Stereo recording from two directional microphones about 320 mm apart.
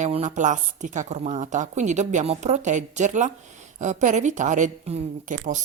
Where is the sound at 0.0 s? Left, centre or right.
Right.